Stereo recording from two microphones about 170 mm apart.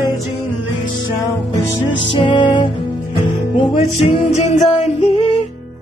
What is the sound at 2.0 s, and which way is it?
Music, 30° left (ahead or behind).